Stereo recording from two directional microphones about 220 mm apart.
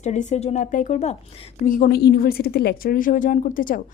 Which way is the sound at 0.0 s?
30° left (ahead or behind).